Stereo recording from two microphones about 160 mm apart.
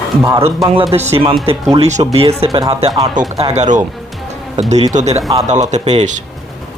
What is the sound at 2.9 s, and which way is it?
Speech, 25° right (ahead or behind).